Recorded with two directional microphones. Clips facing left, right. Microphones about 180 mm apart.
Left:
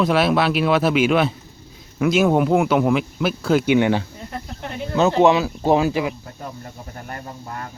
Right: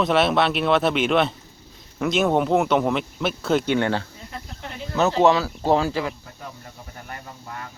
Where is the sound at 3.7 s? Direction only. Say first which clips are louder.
Left 5 dB; 10° left (ahead or behind).